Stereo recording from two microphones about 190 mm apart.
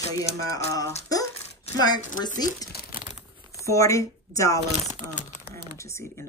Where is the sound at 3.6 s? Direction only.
15° left (ahead or behind).